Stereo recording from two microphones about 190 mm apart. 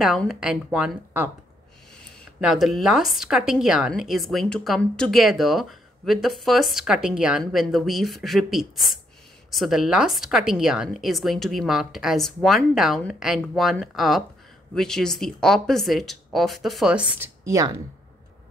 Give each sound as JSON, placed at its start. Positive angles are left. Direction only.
{"t": 0.0, "sound": "a woman's voice", "side_deg": 0}
{"t": 2.4, "sound": "a woman's voice", "side_deg": 0}
{"t": 17.5, "sound": "speech", "side_deg": -15}